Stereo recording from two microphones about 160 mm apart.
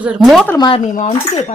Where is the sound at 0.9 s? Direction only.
50° left (ahead or behind).